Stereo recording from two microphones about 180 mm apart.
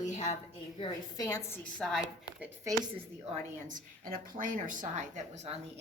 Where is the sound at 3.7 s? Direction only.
50° right (ahead or behind).